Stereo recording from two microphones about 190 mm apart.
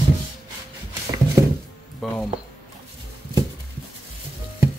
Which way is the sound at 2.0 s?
Centre (ahead or behind).